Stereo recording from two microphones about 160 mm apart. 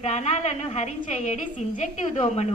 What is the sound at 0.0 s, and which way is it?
A woman's voice, 45° left (ahead or behind).